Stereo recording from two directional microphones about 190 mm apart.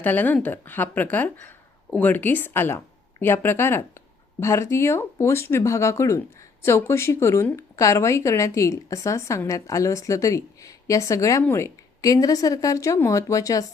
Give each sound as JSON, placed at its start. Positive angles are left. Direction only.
{"t": 0.0, "sound": "speech", "side_deg": 10}